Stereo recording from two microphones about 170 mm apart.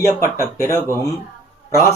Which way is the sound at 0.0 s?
15° left (ahead or behind).